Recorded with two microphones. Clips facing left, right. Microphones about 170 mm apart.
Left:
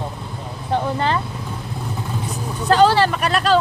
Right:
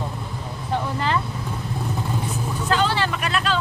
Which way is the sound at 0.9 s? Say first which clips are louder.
Left 3 dB; 30° left (ahead or behind).